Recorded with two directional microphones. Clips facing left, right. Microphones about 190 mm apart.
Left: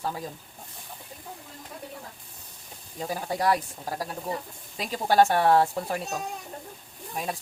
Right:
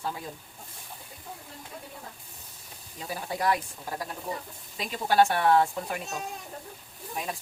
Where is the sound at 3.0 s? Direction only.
40° left (ahead or behind).